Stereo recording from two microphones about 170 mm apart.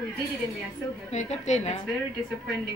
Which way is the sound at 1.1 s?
45° left (ahead or behind).